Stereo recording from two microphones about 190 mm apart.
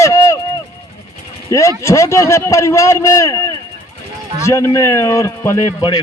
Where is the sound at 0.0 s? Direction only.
15° left (ahead or behind).